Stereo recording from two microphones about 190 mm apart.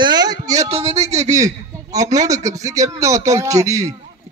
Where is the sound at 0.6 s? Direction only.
30° right (ahead or behind).